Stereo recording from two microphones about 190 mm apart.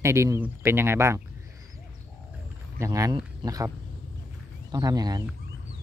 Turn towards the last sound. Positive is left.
turn(degrees=-20)  # may be behind; listen again after turning